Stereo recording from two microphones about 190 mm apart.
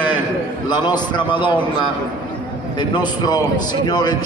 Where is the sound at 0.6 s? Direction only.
25° left (ahead or behind).